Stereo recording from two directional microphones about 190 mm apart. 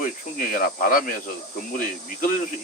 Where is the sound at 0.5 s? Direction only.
45° left (ahead or behind).